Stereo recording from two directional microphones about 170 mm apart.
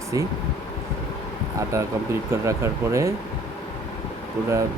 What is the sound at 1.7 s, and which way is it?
Speech, 15° right (ahead or behind).